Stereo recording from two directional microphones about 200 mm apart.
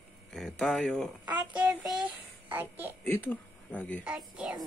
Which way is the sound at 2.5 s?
10° right (ahead or behind).